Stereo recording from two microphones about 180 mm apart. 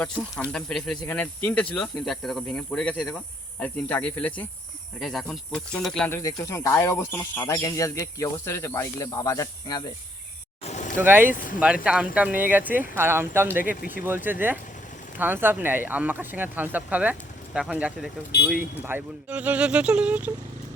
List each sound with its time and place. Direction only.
0.5 s speech: 5° left (ahead or behind)
6.2 s speech: 15° left (ahead or behind)
10.6 s vehicle: 40° left (ahead or behind)
10.9 s speech: 10° right (ahead or behind)
11.3 s speech: 45° left (ahead or behind)
11.6 s speech: 5° right (ahead or behind)